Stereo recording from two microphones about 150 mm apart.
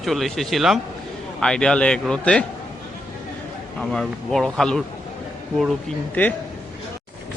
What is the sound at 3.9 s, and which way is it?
Speech, 5° left (ahead or behind).